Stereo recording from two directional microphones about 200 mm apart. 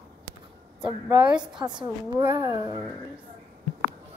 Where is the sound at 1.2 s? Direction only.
5° right (ahead or behind).